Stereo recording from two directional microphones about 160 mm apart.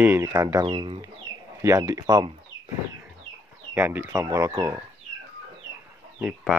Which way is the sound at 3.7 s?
10° right (ahead or behind).